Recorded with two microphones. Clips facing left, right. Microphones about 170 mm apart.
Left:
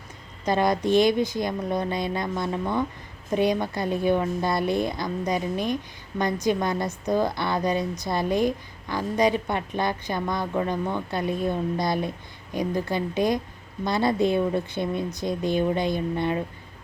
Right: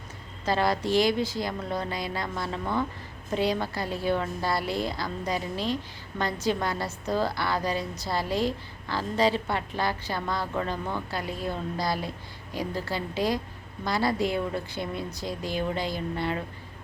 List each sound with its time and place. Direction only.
0.4 s a woman's voice: 20° left (ahead or behind)